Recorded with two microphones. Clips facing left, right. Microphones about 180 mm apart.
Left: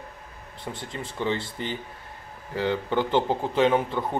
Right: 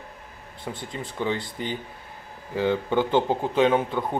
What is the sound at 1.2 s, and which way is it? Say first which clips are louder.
Speech: even; 10° right (ahead or behind).